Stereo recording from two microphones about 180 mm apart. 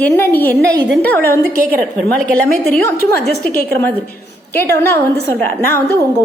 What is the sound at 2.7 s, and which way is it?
A woman's voice, 15° left (ahead or behind).